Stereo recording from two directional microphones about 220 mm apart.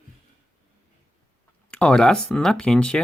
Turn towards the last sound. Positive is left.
turn(degrees=5)  # may be behind; listen again after turning